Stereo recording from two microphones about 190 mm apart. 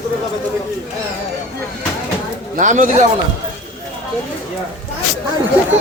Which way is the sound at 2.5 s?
40° right (ahead or behind).